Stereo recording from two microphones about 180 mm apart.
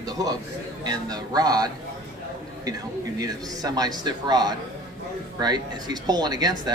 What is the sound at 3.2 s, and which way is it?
Speech, 20° right (ahead or behind).